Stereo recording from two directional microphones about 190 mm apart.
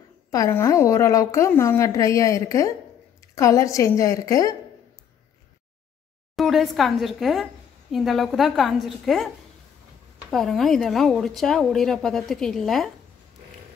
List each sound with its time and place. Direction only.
0.3 s a woman's voice: 15° left (ahead or behind)
6.3 s a woman's voice: centre (ahead or behind)
10.3 s a woman's voice: centre (ahead or behind)